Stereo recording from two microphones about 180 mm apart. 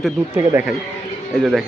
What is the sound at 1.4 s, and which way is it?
Speech, centre (ahead or behind).